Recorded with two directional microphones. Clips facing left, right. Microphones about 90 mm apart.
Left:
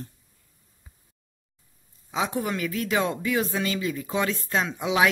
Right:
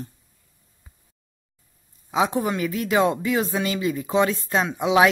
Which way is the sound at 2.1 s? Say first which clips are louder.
Right 5 dB; 20° right (ahead or behind).